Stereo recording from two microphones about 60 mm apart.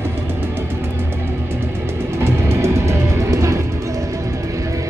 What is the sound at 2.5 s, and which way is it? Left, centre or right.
Music, right.